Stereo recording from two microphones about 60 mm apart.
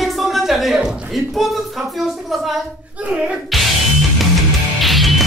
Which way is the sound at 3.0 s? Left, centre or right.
Centre.